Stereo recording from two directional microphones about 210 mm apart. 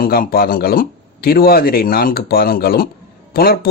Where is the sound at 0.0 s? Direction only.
45° left (ahead or behind).